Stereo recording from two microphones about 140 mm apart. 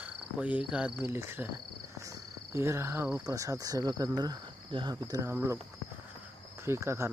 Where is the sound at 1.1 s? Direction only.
15° right (ahead or behind).